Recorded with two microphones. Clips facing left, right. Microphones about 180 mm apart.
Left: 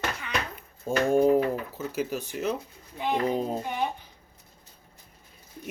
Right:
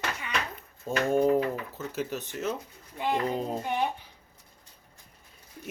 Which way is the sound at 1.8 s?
Centre (ahead or behind).